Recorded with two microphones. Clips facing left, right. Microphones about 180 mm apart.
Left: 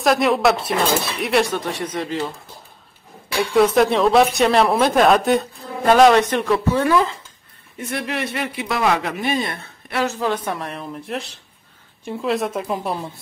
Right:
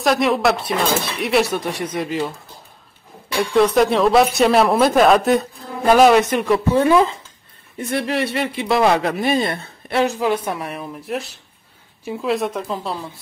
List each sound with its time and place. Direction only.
0.0 s speech: centre (ahead or behind)
3.3 s speech: centre (ahead or behind); by 7.0 s 20° right (ahead or behind)
7.9 s speech: 35° right (ahead or behind)
10.0 s a woman's voice: 15° right (ahead or behind); by 12.6 s centre (ahead or behind)
12.6 s speech: 15° left (ahead or behind)